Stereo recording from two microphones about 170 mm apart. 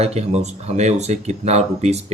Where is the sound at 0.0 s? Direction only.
40° right (ahead or behind).